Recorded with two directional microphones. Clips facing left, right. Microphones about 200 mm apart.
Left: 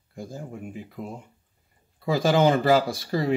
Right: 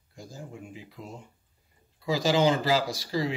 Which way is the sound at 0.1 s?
55° left (ahead or behind).